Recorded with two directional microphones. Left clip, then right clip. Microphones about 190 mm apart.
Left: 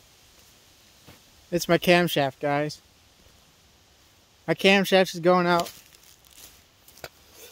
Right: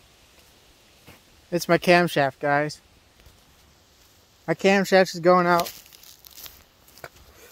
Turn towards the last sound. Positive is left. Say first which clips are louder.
# even
turn(degrees=10)  # may be behind; listen again after turning